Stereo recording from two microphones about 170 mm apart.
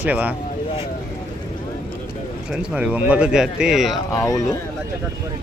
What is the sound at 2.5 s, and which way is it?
Speech, 5° right (ahead or behind).